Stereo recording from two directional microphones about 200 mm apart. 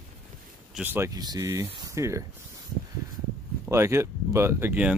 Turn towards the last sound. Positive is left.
turn(degrees=-10)  # may be behind; listen again after turning